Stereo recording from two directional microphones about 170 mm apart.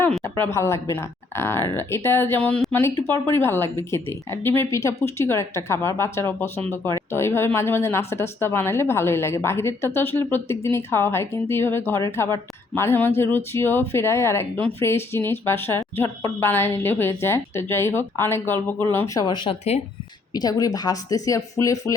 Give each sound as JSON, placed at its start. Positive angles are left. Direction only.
{"t": 0.2, "sound": "speech", "side_deg": 15}
{"t": 20.3, "sound": "speech", "side_deg": 20}